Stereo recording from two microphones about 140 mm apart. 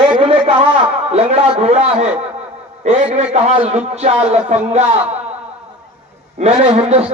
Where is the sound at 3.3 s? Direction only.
50° right (ahead or behind).